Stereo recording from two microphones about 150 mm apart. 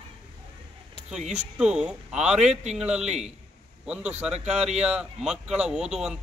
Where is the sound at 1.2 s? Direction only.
50° right (ahead or behind).